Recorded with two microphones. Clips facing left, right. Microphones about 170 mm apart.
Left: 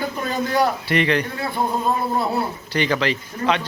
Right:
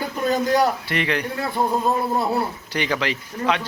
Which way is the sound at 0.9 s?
5° right (ahead or behind).